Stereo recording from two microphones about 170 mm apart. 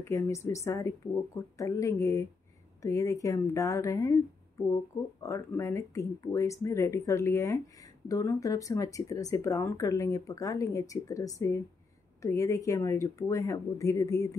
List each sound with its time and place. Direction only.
0.0 s speech: 15° left (ahead or behind)
5.2 s speech: 15° left (ahead or behind)